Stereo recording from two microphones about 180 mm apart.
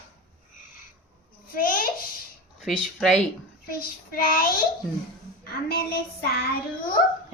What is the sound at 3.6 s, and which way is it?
Child singing, 55° left (ahead or behind).